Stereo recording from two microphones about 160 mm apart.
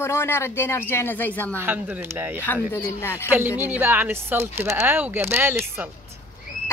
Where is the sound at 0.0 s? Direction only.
15° left (ahead or behind).